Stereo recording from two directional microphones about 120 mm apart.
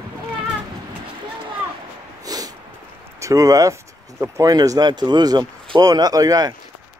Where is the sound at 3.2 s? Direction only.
30° right (ahead or behind).